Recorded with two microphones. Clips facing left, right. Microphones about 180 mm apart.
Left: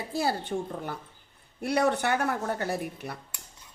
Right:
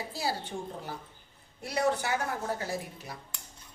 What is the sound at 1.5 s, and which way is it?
A woman's voice, 65° left (ahead or behind).